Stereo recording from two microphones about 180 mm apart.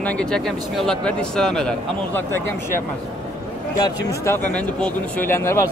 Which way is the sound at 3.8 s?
15° left (ahead or behind).